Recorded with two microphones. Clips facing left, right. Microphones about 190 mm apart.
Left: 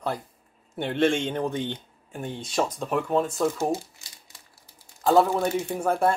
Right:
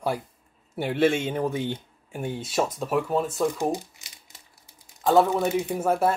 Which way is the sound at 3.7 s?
20° right (ahead or behind).